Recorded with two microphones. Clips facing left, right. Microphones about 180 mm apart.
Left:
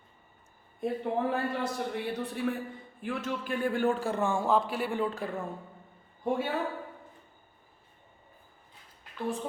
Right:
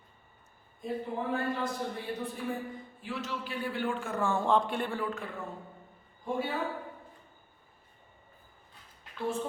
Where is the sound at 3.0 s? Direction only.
50° left (ahead or behind); by 4.2 s 35° left (ahead or behind).